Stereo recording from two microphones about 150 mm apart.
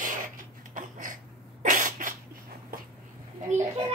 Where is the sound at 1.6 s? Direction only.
60° right (ahead or behind).